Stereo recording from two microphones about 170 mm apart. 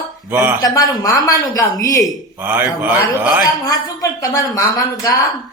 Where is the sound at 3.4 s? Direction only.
20° left (ahead or behind).